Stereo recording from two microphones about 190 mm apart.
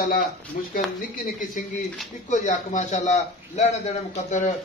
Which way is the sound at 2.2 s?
40° left (ahead or behind).